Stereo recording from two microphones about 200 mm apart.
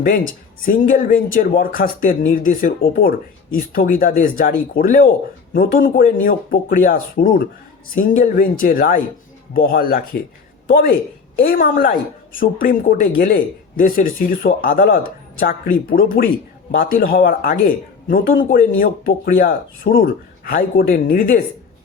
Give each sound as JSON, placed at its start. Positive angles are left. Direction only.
{"t": 0.6, "sound": "speech", "side_deg": 45}
{"t": 11.4, "sound": "speech", "side_deg": 45}